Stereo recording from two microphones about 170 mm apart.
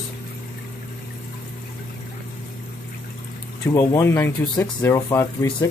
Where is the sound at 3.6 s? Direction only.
15° left (ahead or behind).